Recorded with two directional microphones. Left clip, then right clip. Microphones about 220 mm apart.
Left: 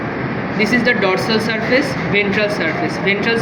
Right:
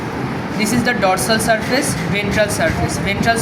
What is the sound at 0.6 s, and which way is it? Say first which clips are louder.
Speech: left 2 dB; 45° right (ahead or behind).